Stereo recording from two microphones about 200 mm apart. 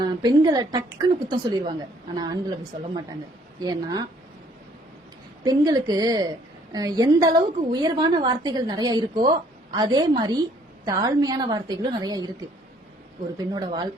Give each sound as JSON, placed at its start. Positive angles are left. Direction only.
{"t": 0.0, "sound": "a woman's voice", "side_deg": -20}
{"t": 3.6, "sound": "a woman's voice", "side_deg": -20}
{"t": 5.4, "sound": "a woman's voice", "side_deg": -20}
{"t": 13.5, "sound": "a woman's voice", "side_deg": -20}